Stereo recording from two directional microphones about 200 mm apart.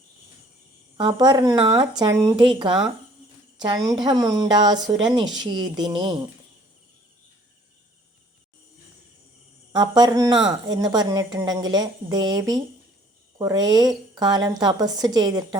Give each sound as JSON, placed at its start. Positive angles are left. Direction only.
{"t": 0.9, "sound": "a woman's voice", "side_deg": -20}
{"t": 3.8, "sound": "a woman's voice", "side_deg": -20}
{"t": 9.7, "sound": "a woman's voice", "side_deg": -20}